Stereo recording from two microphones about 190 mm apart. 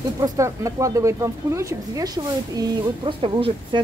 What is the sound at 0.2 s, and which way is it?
Speech, 15° right (ahead or behind).